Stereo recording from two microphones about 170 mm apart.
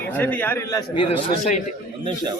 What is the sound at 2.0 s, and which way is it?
Speech, 25° right (ahead or behind).